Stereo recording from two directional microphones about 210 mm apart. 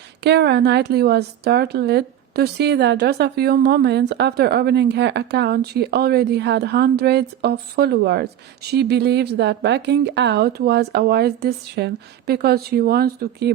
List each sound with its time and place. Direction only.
0.2 s a woman's voice: 55° right (ahead or behind)